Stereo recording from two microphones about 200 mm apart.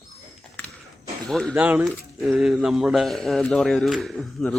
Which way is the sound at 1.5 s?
10° right (ahead or behind).